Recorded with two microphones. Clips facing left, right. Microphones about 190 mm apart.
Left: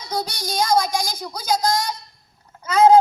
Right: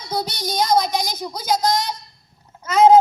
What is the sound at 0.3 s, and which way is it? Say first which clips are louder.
Speech: right 2 dB; 20° right (ahead or behind).